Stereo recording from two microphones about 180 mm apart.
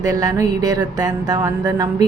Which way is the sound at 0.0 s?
20° right (ahead or behind).